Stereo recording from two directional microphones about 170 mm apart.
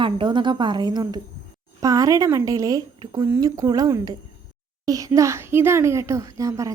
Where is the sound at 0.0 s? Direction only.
30° right (ahead or behind).